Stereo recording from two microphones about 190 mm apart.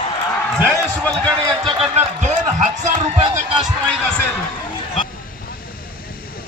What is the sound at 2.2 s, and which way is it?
Speech, 35° right (ahead or behind).